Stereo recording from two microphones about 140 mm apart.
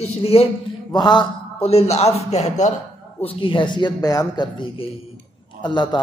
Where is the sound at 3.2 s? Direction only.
40° left (ahead or behind).